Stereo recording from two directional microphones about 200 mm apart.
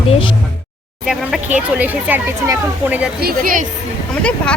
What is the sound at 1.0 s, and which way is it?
Speech, 5° right (ahead or behind).